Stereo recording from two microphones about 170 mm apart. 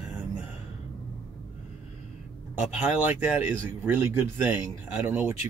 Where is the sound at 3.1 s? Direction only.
10° right (ahead or behind).